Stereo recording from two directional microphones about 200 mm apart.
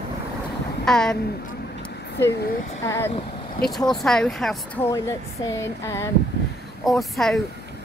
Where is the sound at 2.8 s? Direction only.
15° left (ahead or behind).